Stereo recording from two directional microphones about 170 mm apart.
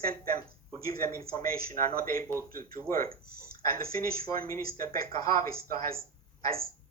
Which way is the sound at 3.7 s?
60° right (ahead or behind).